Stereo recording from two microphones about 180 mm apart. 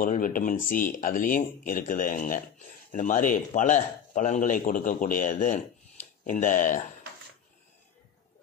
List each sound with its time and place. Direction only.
0.0 s a man's voice: 50° left (ahead or behind)